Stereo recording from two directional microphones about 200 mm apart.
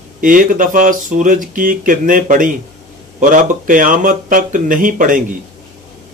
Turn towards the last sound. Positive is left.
turn(degrees=-40)  # may be behind; listen again after turning